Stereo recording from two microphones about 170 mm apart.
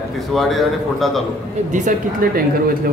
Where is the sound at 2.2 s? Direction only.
55° right (ahead or behind).